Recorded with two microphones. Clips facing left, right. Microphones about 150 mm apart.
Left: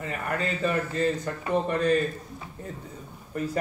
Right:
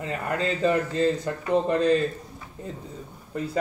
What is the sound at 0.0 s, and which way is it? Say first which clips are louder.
A man's voice: right 3 dB; 30° right (ahead or behind).